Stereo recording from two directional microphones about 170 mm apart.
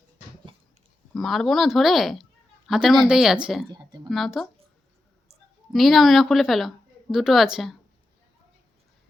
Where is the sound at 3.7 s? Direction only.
25° right (ahead or behind).